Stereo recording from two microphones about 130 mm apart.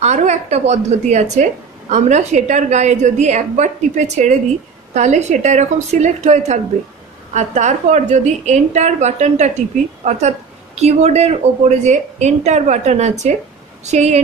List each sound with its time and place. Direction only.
0.0 s a woman's voice: 60° right (ahead or behind)